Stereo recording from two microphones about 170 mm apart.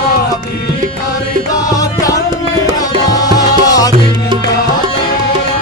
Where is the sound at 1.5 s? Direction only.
20° left (ahead or behind).